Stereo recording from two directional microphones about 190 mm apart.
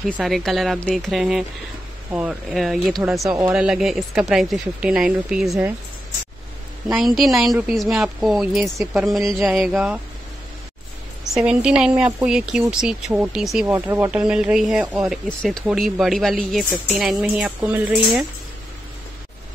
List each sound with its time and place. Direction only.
0.0 s speech: centre (ahead or behind)
6.9 s speech: centre (ahead or behind)
11.3 s speech: 5° right (ahead or behind)